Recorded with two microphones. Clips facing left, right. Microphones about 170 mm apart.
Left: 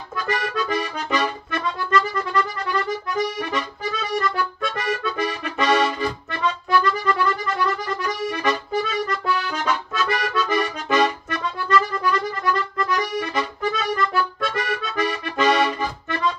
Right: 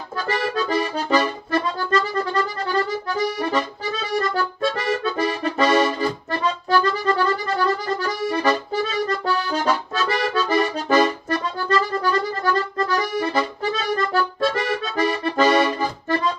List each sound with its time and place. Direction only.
0.1 s accordion: 30° right (ahead or behind)